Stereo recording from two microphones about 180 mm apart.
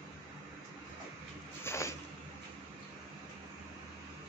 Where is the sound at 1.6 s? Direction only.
15° left (ahead or behind).